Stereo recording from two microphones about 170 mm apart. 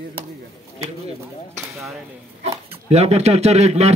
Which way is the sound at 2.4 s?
40° right (ahead or behind).